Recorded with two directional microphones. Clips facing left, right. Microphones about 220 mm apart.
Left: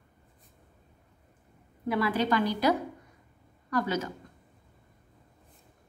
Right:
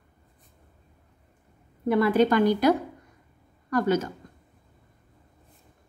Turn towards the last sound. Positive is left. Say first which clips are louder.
# right 6 dB
turn(degrees=-50)  # may be behind; listen again after turning